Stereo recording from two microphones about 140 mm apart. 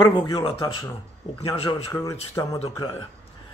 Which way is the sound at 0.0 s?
35° left (ahead or behind).